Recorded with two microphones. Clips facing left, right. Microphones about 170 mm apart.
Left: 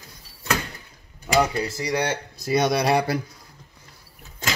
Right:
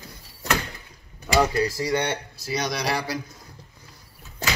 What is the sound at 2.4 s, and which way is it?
Speech, 55° left (ahead or behind).